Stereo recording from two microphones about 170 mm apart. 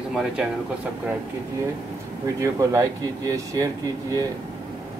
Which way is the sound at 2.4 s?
20° right (ahead or behind).